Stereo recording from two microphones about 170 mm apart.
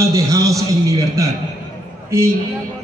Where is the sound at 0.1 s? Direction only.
20° right (ahead or behind).